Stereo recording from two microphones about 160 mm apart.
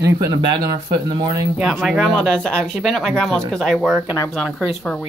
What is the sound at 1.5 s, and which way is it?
Speech, centre (ahead or behind).